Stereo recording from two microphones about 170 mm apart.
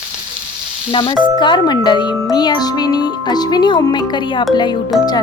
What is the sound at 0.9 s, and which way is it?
Speech, 30° left (ahead or behind).